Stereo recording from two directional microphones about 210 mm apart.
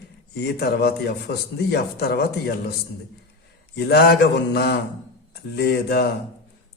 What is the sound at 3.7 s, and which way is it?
A man's voice, 50° left (ahead or behind).